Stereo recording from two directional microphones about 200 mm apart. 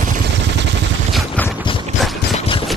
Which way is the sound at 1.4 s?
5° left (ahead or behind).